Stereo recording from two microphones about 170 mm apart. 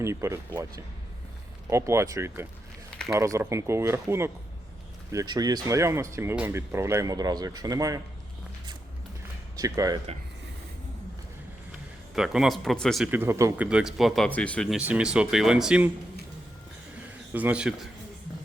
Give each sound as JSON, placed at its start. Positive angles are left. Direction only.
{"t": 0.0, "sound": "speech", "side_deg": -15}
{"t": 9.6, "sound": "speech", "side_deg": -20}
{"t": 12.1, "sound": "speech", "side_deg": -5}
{"t": 13.1, "sound": "speech", "side_deg": -15}
{"t": 13.7, "sound": "speech", "side_deg": -5}
{"t": 14.8, "sound": "speech", "side_deg": -5}
{"t": 17.3, "sound": "speech", "side_deg": -10}